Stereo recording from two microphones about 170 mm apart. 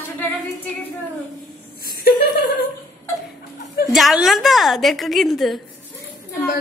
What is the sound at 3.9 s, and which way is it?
A woman's voice, centre (ahead or behind).